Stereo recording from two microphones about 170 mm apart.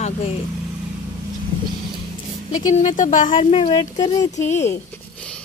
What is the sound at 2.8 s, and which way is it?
Speech, 50° left (ahead or behind).